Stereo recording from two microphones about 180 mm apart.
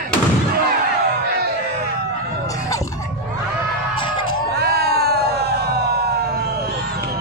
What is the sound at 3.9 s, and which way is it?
Music, 25° left (ahead or behind).